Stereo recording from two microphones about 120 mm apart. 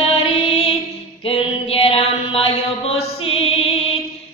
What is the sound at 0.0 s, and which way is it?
Music, 50° left (ahead or behind).